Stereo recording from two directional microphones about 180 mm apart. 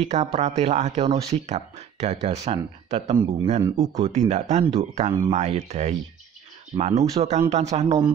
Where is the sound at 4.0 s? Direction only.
40° right (ahead or behind).